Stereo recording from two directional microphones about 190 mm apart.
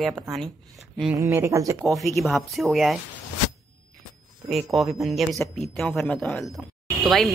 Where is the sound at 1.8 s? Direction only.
Centre (ahead or behind).